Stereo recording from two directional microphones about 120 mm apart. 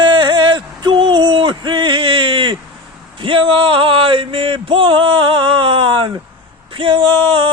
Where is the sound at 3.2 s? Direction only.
45° right (ahead or behind).